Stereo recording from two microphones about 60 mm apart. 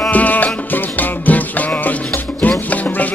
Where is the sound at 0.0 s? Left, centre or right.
Left.